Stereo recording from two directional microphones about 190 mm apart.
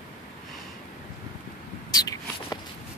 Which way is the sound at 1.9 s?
20° left (ahead or behind).